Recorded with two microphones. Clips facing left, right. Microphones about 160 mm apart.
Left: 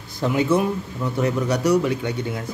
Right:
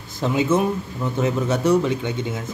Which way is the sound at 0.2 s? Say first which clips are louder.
Even; 20° right (ahead or behind).